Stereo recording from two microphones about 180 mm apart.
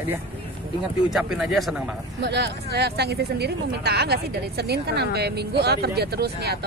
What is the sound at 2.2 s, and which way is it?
Speech, 70° right (ahead or behind).